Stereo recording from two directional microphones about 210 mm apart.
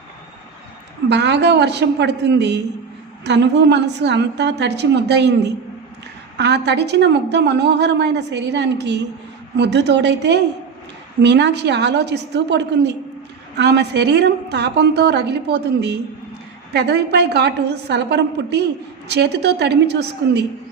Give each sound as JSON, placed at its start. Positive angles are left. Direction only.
{"t": 1.1, "sound": "a woman's voice", "side_deg": -55}
{"t": 6.3, "sound": "a woman's voice", "side_deg": -55}